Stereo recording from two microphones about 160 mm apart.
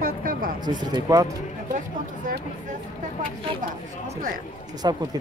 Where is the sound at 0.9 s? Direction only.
20° right (ahead or behind).